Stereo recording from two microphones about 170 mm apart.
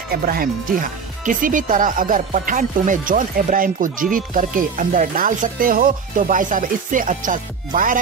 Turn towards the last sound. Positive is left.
turn(degrees=-50)  # may be behind; listen again after turning